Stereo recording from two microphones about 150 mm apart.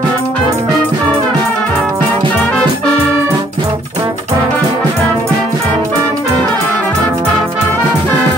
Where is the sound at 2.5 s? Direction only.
5° left (ahead or behind).